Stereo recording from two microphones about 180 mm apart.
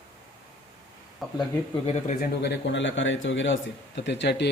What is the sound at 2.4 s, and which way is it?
Speech, 75° left (ahead or behind).